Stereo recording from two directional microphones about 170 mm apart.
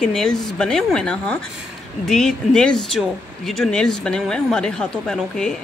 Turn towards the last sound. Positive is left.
turn(degrees=5)  # may be behind; listen again after turning